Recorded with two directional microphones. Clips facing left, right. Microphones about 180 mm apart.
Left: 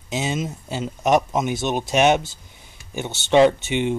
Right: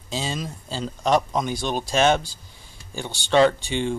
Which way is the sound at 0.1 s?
20° left (ahead or behind).